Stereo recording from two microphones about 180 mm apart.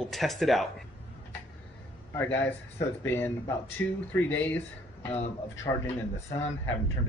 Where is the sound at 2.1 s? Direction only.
10° left (ahead or behind).